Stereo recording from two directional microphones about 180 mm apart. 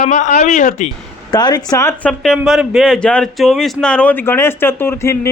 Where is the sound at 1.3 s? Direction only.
25° left (ahead or behind).